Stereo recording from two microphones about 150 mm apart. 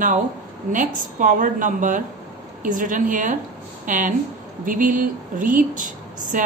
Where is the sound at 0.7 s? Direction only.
60° right (ahead or behind).